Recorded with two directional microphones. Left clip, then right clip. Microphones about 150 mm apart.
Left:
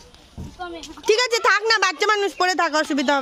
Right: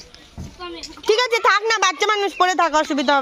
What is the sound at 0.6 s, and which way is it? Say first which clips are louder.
A woman's voice: right 1 dB; 20° left (ahead or behind).